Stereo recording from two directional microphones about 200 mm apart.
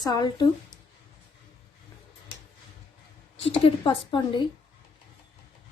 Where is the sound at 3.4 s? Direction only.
25° left (ahead or behind).